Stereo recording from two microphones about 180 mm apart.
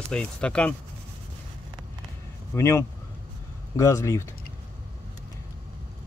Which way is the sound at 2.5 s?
15° left (ahead or behind).